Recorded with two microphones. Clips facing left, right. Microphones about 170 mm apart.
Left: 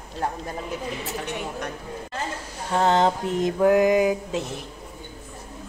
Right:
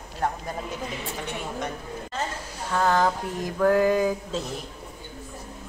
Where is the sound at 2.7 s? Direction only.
25° left (ahead or behind).